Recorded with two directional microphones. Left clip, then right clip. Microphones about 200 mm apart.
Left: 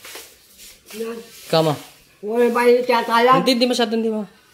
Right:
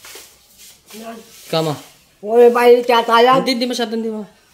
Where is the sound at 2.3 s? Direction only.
35° right (ahead or behind).